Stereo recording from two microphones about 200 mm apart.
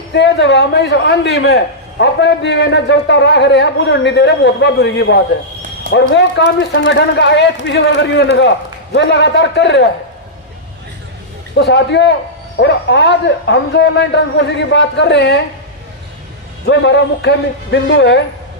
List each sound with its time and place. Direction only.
0.1 s a man's voice: 60° left (ahead or behind)
11.5 s a man's voice: 60° left (ahead or behind)
16.6 s a man's voice: 60° left (ahead or behind)